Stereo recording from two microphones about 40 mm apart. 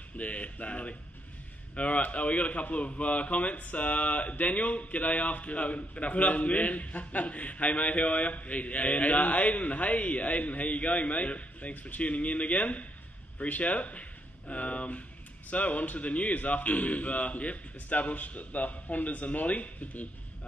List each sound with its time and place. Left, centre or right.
0.2 s a man's voice: left